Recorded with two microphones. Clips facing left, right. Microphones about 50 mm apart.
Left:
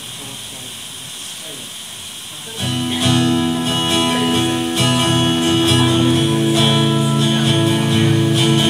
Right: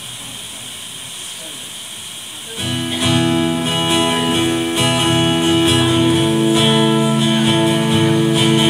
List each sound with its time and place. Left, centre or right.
2.6 s music: centre